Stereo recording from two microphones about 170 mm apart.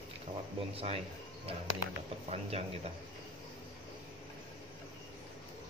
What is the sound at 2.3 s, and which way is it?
Speech, 40° right (ahead or behind).